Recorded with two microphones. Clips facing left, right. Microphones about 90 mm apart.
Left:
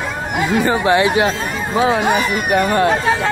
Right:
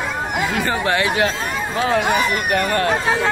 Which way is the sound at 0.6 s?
20° left (ahead or behind).